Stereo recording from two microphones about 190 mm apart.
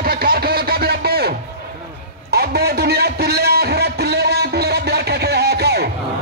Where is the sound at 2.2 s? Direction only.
60° right (ahead or behind).